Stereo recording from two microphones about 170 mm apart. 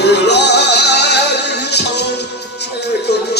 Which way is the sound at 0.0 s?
85° left.